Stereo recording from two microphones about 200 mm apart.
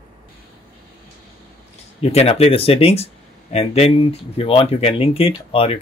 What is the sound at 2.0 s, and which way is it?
Speech, 30° left (ahead or behind).